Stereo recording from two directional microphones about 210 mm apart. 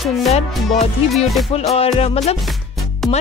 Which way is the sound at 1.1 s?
Centre (ahead or behind).